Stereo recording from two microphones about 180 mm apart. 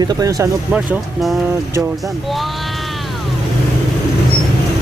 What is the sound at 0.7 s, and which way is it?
Speech, 5° right (ahead or behind).